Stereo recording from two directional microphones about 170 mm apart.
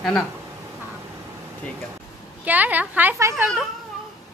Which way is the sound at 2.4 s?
10° right (ahead or behind).